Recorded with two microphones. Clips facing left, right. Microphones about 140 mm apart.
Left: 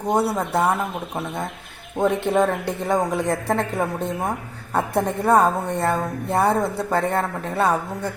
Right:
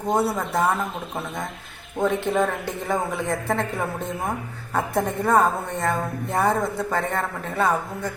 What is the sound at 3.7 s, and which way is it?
A woman's voice, 20° left (ahead or behind).